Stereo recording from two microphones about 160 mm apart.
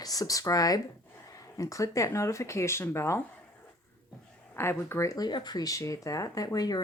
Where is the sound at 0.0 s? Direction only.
20° left (ahead or behind).